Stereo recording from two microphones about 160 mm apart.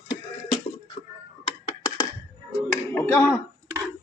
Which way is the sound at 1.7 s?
25° left (ahead or behind).